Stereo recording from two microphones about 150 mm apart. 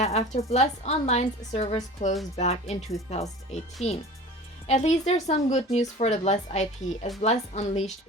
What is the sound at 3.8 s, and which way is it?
A woman's voice, 45° left (ahead or behind).